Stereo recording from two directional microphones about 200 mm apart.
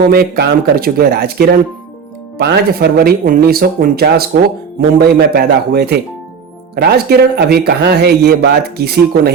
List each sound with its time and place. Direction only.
0.1 s a man's voice: 50° right (ahead or behind)